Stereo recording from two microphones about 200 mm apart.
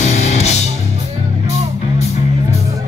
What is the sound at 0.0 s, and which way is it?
Music, 35° left (ahead or behind).